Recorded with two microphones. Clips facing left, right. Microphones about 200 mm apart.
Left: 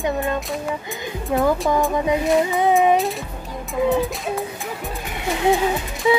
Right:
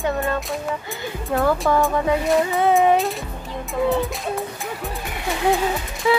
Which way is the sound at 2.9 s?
Centre (ahead or behind).